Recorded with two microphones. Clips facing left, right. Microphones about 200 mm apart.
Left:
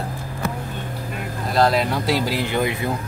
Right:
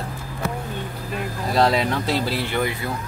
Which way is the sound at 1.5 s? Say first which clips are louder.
Left 1 dB; centre (ahead or behind).